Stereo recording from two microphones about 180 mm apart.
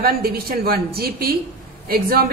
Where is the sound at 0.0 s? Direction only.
55° right (ahead or behind).